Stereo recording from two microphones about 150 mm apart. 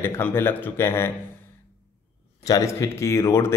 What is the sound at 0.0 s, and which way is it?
Speech, 15° left (ahead or behind).